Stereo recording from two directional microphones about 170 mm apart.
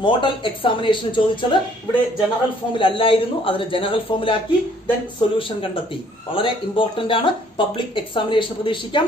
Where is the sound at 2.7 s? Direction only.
30° left (ahead or behind).